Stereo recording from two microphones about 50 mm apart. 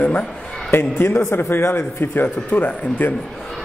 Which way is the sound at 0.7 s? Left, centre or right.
Left.